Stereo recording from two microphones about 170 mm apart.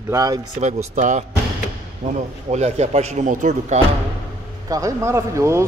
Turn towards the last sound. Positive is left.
turn(degrees=-15)  # may be behind; listen again after turning